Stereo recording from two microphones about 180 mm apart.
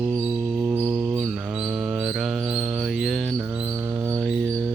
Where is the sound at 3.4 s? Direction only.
10° right (ahead or behind).